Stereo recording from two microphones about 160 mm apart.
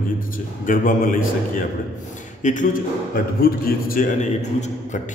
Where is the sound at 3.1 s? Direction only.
70° left (ahead or behind).